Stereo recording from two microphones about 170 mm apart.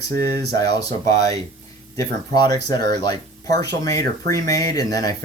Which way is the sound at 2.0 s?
20° left (ahead or behind).